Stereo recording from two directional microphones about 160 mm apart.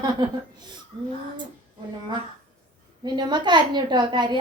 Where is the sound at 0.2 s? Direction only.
25° right (ahead or behind).